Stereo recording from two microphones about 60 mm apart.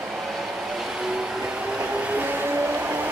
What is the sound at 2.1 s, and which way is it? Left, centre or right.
Vehicle, right.